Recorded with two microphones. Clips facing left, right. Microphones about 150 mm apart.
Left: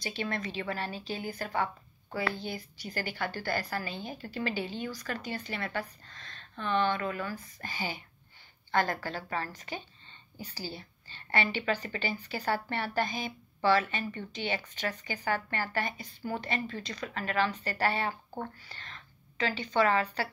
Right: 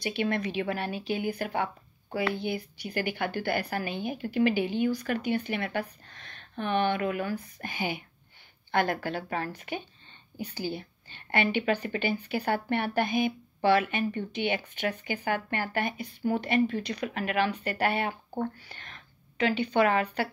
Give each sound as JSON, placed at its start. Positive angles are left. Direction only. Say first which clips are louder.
{"t": 0.0, "sound": "a woman's voice", "louder": "right 6 dB", "side_deg": -60}
{"t": 4.1, "sound": "a woman's voice", "louder": "right 7 dB", "side_deg": -10}
{"t": 4.8, "sound": "a woman's voice", "louder": "right 9 dB", "side_deg": -60}